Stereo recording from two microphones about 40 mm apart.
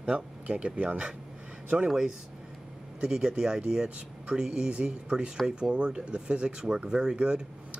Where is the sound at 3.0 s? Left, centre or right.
Centre.